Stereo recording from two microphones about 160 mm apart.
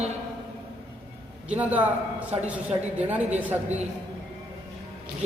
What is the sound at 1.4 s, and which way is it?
A man's voice, 10° right (ahead or behind).